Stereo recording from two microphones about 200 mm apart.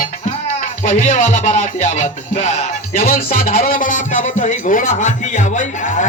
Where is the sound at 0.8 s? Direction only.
40° left (ahead or behind).